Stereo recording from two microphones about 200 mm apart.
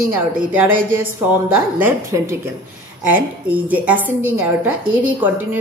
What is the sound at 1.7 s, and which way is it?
A woman's voice, 10° right (ahead or behind).